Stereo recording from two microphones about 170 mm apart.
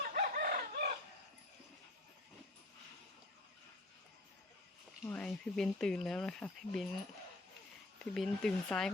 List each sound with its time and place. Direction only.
0.1 s chicken: 55° right (ahead or behind)
5.0 s speech: 5° left (ahead or behind)
8.1 s speech: centre (ahead or behind)